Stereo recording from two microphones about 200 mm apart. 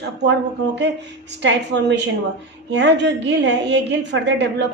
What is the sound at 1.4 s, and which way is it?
A woman's voice, 60° right (ahead or behind).